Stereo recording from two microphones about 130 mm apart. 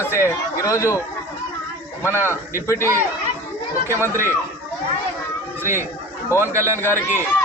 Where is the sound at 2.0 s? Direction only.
20° left (ahead or behind).